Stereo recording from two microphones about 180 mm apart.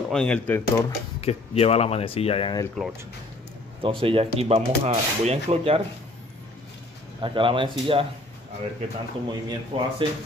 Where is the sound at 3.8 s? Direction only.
30° right (ahead or behind).